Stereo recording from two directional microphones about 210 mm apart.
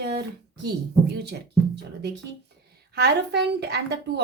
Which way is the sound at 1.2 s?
55° right (ahead or behind).